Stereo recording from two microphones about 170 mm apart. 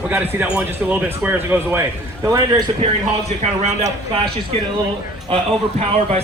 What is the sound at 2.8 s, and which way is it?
Speech, 40° right (ahead or behind).